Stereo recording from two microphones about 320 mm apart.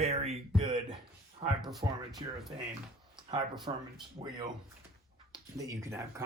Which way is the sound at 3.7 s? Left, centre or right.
Centre.